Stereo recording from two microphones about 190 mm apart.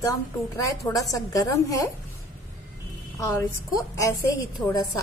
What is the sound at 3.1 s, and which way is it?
Speech, 15° left (ahead or behind).